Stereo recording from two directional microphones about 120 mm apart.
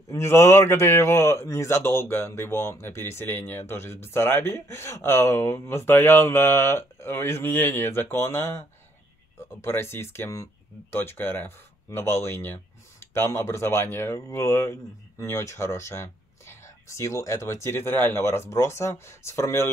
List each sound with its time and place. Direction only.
0.1 s speech: 25° left (ahead or behind)